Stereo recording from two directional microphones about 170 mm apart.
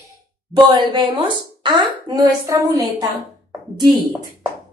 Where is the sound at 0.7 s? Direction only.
25° right (ahead or behind).